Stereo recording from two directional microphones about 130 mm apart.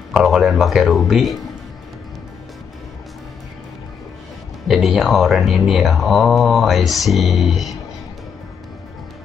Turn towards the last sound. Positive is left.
turn(degrees=0)  # may be behind; listen again after turning